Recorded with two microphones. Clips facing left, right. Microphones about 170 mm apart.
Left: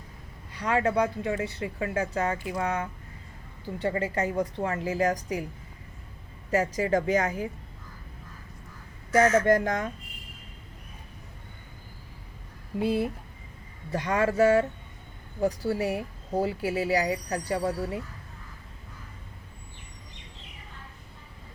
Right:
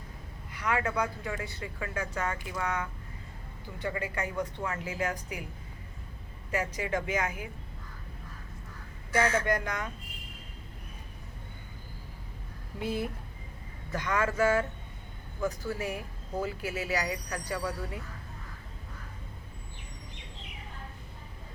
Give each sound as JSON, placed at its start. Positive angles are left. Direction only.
{"t": 0.5, "sound": "speech", "side_deg": 30}
{"t": 6.7, "sound": "speech", "side_deg": 40}
{"t": 9.1, "sound": "speech", "side_deg": 35}
{"t": 12.8, "sound": "speech", "side_deg": 30}